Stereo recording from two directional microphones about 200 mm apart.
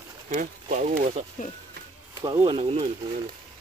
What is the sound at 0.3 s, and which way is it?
Speech, 40° right (ahead or behind).